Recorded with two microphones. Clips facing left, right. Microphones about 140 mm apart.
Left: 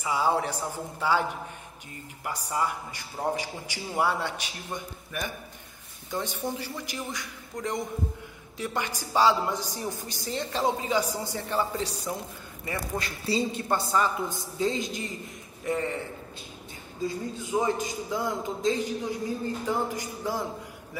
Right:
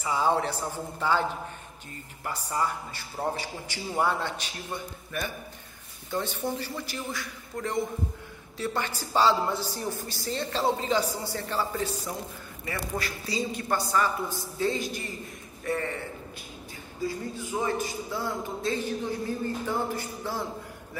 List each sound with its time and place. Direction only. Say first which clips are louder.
0.0 s a man's voice: even; 10° left (ahead or behind)
2.2 s a man's voice: even; 10° left (ahead or behind)
12.6 s a man's voice: even; 25° left (ahead or behind)
17.4 s a man's voice: left 3 dB; 20° left (ahead or behind)